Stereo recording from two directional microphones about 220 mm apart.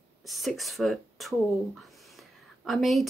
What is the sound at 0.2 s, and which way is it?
Speech, centre (ahead or behind).